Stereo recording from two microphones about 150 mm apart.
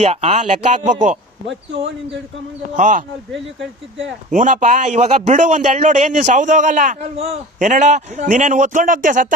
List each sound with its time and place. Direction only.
0.0 s speech: 45° right (ahead or behind)
2.7 s a man's voice: 55° right (ahead or behind)
4.3 s a man's voice: 55° right (ahead or behind)